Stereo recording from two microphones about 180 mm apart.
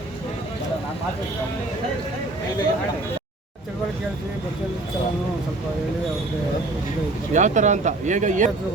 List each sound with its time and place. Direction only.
7.3 s speech: 40° right (ahead or behind)